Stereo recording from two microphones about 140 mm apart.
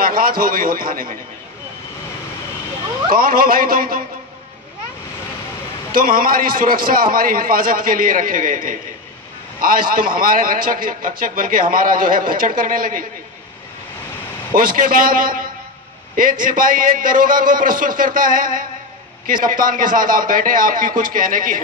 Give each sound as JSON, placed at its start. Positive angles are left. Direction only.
{"t": 0.0, "sound": "a man's voice", "side_deg": -90}
{"t": 3.1, "sound": "a man's voice", "side_deg": -90}
{"t": 5.9, "sound": "a man's voice", "side_deg": -90}
{"t": 9.6, "sound": "a man's voice", "side_deg": -90}
{"t": 14.5, "sound": "a man's voice", "side_deg": -85}